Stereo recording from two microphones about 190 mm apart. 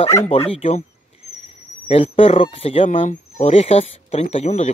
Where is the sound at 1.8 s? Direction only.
30° left (ahead or behind).